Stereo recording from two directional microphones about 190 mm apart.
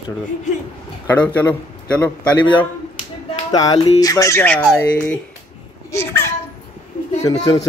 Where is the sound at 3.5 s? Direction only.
20° left (ahead or behind).